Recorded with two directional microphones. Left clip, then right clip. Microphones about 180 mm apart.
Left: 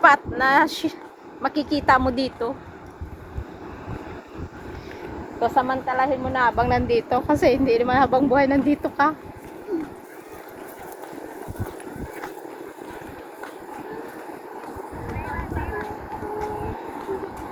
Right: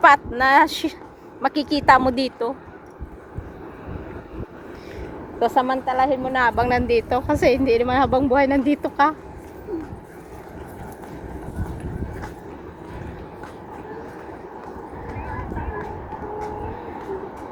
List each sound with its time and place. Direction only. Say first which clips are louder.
0.0 s a woman's voice: right 2 dB; 40° right (ahead or behind)
5.4 s a woman's voice: right 2 dB; 65° right (ahead or behind); by 9.1 s 35° right (ahead or behind)